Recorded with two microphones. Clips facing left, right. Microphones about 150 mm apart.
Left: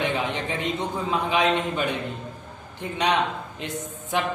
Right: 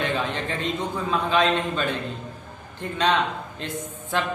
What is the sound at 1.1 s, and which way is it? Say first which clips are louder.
A man's voice: right 1 dB; 15° left (ahead or behind).